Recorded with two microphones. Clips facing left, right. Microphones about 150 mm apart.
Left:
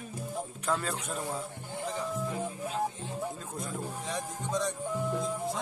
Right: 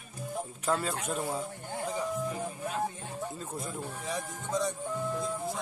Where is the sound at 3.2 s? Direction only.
5° right (ahead or behind).